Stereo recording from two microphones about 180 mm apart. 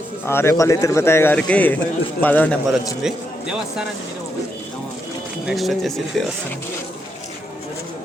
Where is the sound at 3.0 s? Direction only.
5° right (ahead or behind).